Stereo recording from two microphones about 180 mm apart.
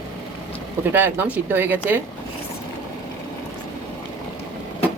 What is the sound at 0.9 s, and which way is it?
Speech, 10° right (ahead or behind).